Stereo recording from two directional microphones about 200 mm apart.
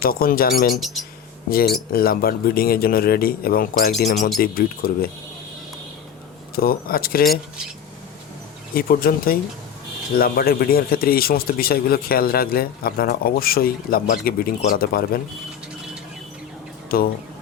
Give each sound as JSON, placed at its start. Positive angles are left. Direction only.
{"t": 0.0, "sound": "a man's voice", "side_deg": 45}
{"t": 0.7, "sound": "speech", "side_deg": 0}
{"t": 1.5, "sound": "a man's voice", "side_deg": 50}
{"t": 6.6, "sound": "a man's voice", "side_deg": 45}
{"t": 8.7, "sound": "a man's voice", "side_deg": 45}